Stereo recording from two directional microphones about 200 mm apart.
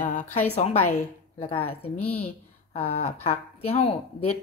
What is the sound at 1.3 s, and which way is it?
Speech, 25° left (ahead or behind).